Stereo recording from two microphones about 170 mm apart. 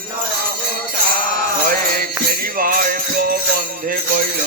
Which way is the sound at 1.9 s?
60° right (ahead or behind).